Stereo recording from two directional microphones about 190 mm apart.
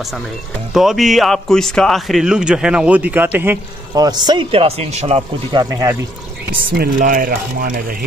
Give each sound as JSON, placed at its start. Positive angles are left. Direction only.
{"t": 0.7, "sound": "speech", "side_deg": 0}
{"t": 5.6, "sound": "speech", "side_deg": -20}
{"t": 6.8, "sound": "speech", "side_deg": -45}